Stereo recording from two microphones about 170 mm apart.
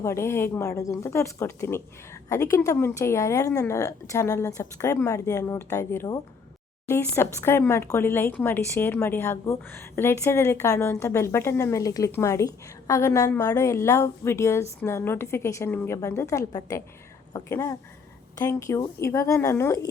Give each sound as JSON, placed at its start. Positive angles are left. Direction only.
{"t": 0.0, "sound": "speech", "side_deg": 15}